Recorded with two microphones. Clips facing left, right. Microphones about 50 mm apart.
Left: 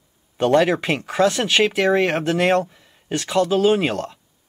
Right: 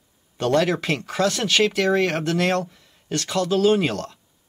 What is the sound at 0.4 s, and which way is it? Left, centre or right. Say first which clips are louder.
Speech: left 4 dB; centre.